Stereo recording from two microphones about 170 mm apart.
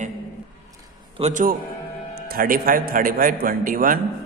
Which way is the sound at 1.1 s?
40° right (ahead or behind).